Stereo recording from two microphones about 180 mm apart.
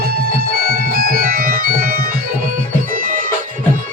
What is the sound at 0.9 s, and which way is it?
Organ, 55° right (ahead or behind).